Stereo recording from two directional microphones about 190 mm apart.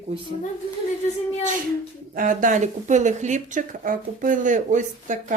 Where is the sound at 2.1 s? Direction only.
45° right (ahead or behind).